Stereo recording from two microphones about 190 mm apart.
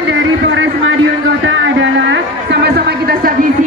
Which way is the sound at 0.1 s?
85° right.